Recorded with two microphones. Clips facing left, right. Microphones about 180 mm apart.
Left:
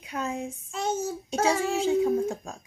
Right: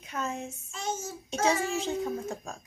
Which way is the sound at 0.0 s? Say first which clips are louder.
Left 3 dB; 15° left (ahead or behind).